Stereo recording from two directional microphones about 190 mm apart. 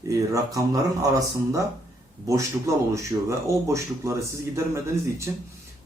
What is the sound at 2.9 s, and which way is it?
Speech, 15° right (ahead or behind).